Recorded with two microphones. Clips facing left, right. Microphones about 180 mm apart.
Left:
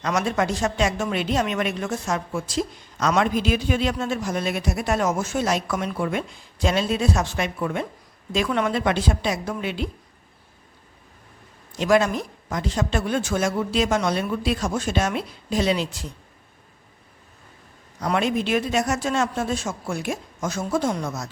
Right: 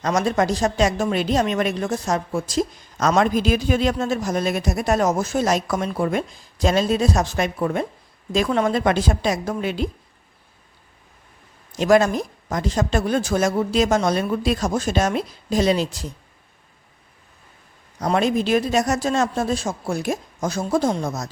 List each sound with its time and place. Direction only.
0.0 s a woman's voice: 40° right (ahead or behind)
11.7 s a woman's voice: 40° right (ahead or behind)
18.0 s a woman's voice: 40° right (ahead or behind)